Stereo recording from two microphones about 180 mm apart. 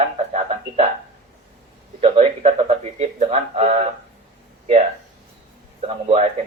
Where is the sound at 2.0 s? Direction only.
35° right (ahead or behind).